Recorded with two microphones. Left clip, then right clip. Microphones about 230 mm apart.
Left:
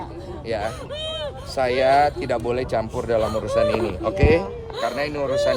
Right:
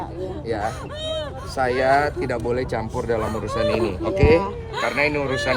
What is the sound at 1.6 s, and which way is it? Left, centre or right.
Speech, centre.